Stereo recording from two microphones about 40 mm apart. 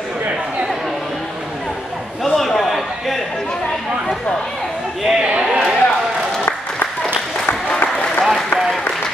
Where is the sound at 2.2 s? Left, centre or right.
Centre.